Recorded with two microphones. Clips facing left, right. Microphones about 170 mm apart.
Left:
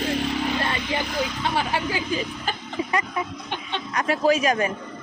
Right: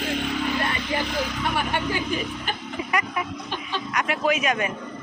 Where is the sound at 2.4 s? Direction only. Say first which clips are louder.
Left 2 dB; 25° left (ahead or behind).